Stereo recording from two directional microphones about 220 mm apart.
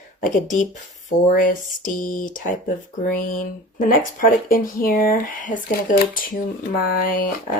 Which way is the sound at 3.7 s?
40° left (ahead or behind).